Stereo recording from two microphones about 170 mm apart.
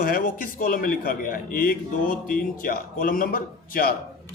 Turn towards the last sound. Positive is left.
turn(degrees=55)  # may be behind; listen again after turning